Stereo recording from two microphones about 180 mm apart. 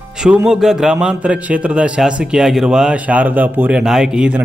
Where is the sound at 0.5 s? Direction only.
5° right (ahead or behind).